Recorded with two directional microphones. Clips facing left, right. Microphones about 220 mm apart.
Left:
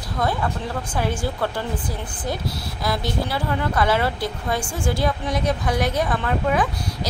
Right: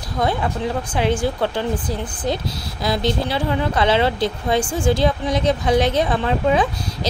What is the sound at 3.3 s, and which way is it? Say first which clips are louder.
A woman's voice: right 3 dB; 20° right (ahead or behind).